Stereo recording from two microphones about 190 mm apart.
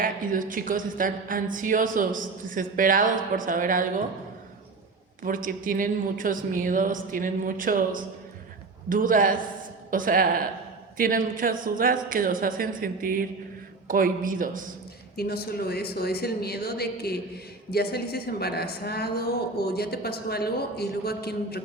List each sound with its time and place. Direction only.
0.0 s a woman's voice: 45° right (ahead or behind)
5.2 s a woman's voice: 45° right (ahead or behind)
15.1 s a woman's voice: 55° left (ahead or behind)